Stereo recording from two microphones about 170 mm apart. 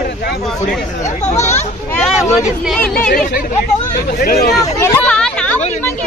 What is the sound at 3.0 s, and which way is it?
Speech, 55° left (ahead or behind).